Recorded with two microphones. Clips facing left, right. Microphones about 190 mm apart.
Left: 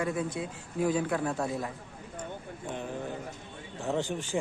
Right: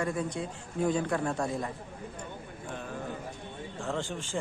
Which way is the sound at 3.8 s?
15° left (ahead or behind).